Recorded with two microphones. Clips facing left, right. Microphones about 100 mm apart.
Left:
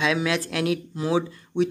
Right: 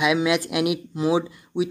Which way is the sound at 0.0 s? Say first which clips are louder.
Right 3 dB; 15° right (ahead or behind).